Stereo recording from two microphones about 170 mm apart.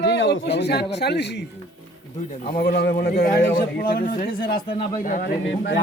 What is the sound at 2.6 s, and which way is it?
Speech, 65° left (ahead or behind).